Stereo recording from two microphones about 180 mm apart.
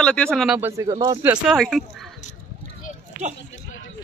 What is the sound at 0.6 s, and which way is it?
Speech, 20° right (ahead or behind).